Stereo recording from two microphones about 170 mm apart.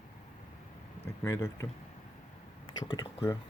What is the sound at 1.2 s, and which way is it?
Speech, 15° left (ahead or behind).